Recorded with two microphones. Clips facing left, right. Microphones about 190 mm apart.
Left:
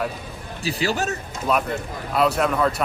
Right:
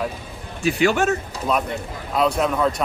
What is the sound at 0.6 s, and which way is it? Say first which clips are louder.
Speech: right 6 dB; 35° left (ahead or behind).